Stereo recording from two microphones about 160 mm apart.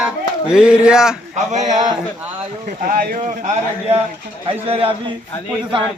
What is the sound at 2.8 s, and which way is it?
Speech, 65° right (ahead or behind).